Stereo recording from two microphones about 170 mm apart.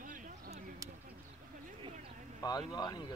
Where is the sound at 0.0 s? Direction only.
55° right (ahead or behind).